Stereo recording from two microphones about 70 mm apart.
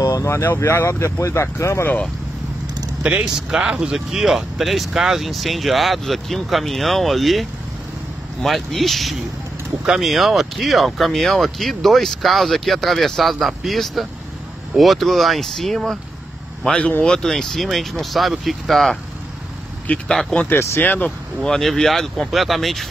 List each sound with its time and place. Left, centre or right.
0.0 s vehicle: left
0.3 s speech: left
3.0 s speech: centre
16.6 s speech: centre
20.1 s speech: centre
20.4 s speech: left
20.8 s speech: left
21.4 s speech: centre